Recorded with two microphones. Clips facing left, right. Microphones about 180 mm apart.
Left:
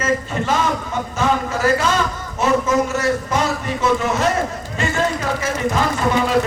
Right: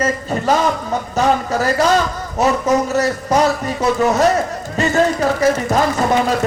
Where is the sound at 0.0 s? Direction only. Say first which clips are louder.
Right 2 dB; 40° right (ahead or behind).